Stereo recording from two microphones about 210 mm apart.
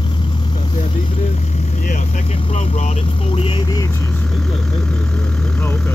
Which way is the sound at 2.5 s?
35° left (ahead or behind).